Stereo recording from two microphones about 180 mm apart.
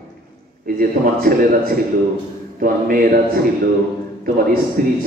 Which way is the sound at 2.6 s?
50° right (ahead or behind).